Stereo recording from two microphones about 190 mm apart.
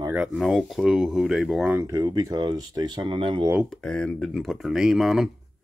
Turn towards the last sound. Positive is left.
turn(degrees=0)  # may be behind; listen again after turning